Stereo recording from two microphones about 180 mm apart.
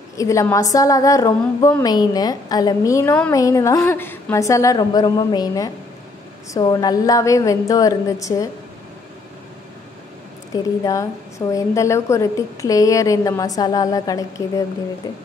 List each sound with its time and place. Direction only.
0.2 s a woman's voice: 15° left (ahead or behind)
10.5 s a woman's voice: 20° left (ahead or behind)